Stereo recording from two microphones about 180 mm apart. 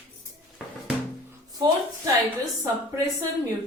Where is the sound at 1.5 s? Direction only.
20° right (ahead or behind).